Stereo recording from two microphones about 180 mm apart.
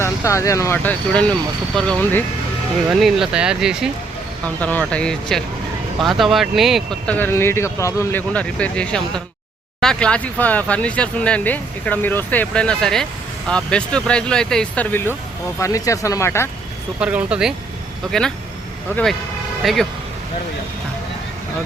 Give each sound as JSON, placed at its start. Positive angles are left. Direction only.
{"t": 0.0, "sound": "speech", "side_deg": 15}
{"t": 2.9, "sound": "speech", "side_deg": 0}
{"t": 4.4, "sound": "speech", "side_deg": 10}
{"t": 17.0, "sound": "speech", "side_deg": -5}
{"t": 19.6, "sound": "speech", "side_deg": 0}